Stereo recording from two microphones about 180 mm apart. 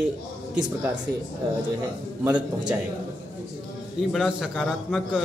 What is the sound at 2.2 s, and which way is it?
Speech, 5° right (ahead or behind).